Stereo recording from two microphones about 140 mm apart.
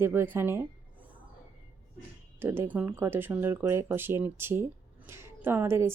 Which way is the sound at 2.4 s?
15° right (ahead or behind).